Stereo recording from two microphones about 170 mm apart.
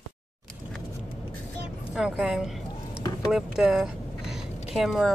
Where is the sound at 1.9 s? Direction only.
5° right (ahead or behind).